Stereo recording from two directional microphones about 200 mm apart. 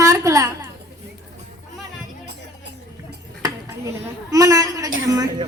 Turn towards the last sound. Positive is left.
turn(degrees=-15)  # may be behind; listen again after turning